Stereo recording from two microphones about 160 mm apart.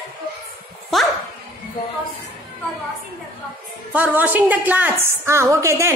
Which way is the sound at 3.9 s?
10° right (ahead or behind).